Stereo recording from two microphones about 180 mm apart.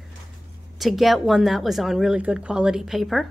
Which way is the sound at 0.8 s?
Centre (ahead or behind).